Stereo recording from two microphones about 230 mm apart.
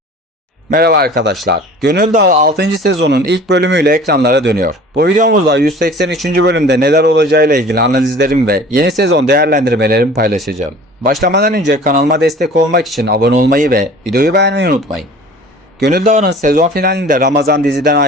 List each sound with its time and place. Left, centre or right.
0.7 s speech: right
15.8 s speech: right